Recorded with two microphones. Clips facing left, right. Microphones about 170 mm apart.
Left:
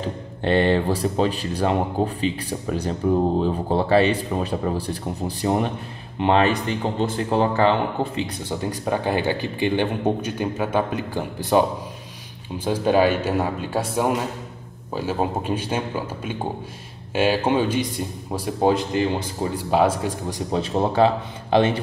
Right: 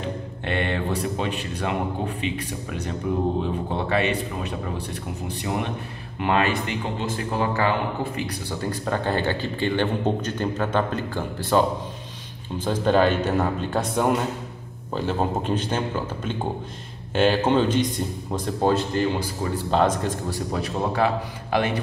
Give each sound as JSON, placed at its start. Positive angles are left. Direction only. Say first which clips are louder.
{"t": 0.0, "sound": "speech", "louder": "left 4 dB", "side_deg": 30}
{"t": 17.1, "sound": "speech", "louder": "even", "side_deg": 5}